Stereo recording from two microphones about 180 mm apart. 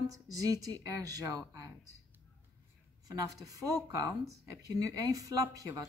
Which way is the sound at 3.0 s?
20° right (ahead or behind).